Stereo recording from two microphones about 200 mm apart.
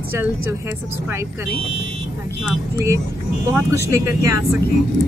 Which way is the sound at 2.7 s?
15° right (ahead or behind).